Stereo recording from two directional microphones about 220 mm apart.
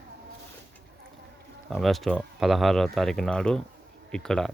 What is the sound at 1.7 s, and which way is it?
Speech, centre (ahead or behind).